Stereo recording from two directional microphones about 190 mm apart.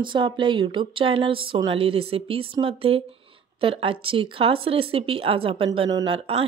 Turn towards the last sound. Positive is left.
turn(degrees=-30)  # may be behind; listen again after turning